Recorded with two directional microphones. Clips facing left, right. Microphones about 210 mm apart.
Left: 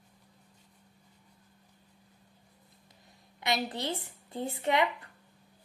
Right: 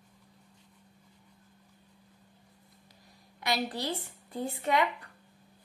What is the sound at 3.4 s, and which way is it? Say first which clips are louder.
Speech: even; 20° left (ahead or behind).